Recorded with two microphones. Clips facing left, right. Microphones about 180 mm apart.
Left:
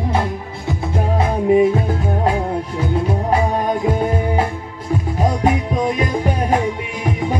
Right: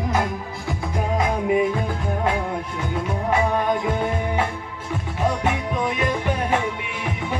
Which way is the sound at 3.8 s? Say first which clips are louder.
Left 5 dB; 35° left (ahead or behind).